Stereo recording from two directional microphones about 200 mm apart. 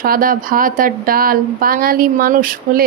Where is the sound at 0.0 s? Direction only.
45° right (ahead or behind).